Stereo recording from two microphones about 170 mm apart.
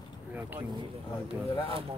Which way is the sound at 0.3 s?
10° right (ahead or behind).